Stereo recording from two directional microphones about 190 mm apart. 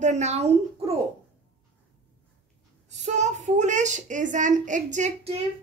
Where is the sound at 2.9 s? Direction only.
40° right (ahead or behind).